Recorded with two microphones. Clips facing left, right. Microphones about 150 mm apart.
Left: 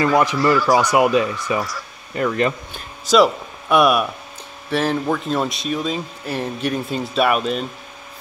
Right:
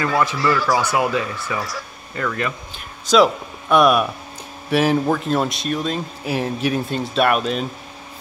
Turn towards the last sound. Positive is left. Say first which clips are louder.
# even
turn(degrees=0)  # may be behind; listen again after turning